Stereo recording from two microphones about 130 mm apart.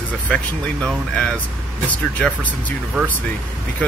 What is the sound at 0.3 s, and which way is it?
Speech, 5° left (ahead or behind).